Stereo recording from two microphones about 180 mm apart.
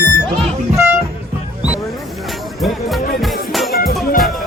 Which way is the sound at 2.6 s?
Centre (ahead or behind).